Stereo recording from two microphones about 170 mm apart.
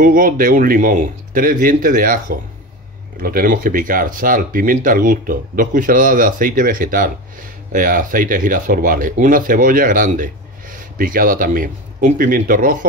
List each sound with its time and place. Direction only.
0.0 s speech: 55° right (ahead or behind)